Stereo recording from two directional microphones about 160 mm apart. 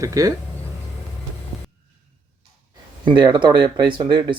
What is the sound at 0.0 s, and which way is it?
Speech, 20° right (ahead or behind).